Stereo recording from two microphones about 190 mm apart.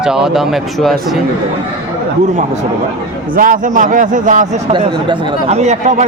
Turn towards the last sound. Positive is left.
turn(degrees=-35)  # may be behind; listen again after turning